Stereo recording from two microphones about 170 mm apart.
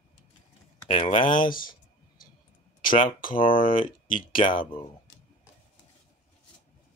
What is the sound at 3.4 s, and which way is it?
Speech, 55° left (ahead or behind).